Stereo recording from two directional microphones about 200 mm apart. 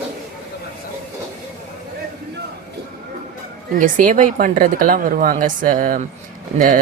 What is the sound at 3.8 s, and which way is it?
Speech, 40° right (ahead or behind).